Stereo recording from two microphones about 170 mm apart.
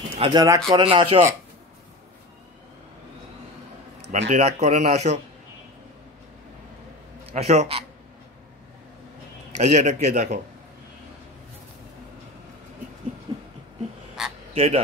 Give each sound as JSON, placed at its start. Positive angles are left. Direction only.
{"t": 0.2, "sound": "speech", "side_deg": -25}
{"t": 4.1, "sound": "speech", "side_deg": -40}
{"t": 7.2, "sound": "speech", "side_deg": -40}
{"t": 9.6, "sound": "a man's voice", "side_deg": -45}
{"t": 13.3, "sound": "a sound", "side_deg": -25}
{"t": 14.2, "sound": "frog", "side_deg": -5}
{"t": 14.5, "sound": "speech", "side_deg": -35}